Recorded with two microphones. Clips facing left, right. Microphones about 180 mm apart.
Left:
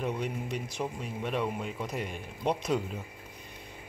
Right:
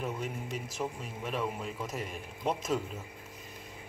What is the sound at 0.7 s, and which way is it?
Speech, centre (ahead or behind).